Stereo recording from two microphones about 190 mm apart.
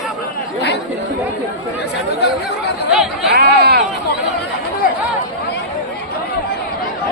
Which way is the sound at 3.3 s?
55° right (ahead or behind).